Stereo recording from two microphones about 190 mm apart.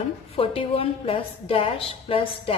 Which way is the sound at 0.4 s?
30° left (ahead or behind).